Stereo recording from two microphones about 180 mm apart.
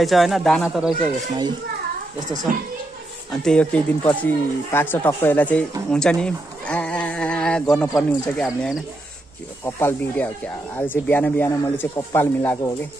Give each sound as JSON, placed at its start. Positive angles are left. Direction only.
{"t": 0.0, "sound": "speech", "side_deg": 0}
{"t": 2.5, "sound": "a woman's voice", "side_deg": -50}
{"t": 3.3, "sound": "speech", "side_deg": 5}
{"t": 9.8, "sound": "speech", "side_deg": 10}